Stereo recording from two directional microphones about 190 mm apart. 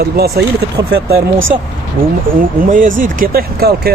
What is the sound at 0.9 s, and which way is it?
Speech, 90° right.